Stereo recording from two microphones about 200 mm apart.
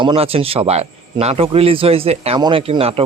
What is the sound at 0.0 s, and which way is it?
Speech, 25° right (ahead or behind).